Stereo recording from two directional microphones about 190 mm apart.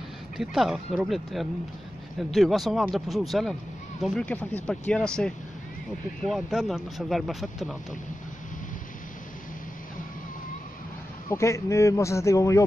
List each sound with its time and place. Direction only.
0.4 s speech: centre (ahead or behind)
11.2 s a man's voice: 15° left (ahead or behind)